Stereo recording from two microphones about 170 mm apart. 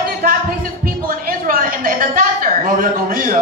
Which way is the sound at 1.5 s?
55° right (ahead or behind).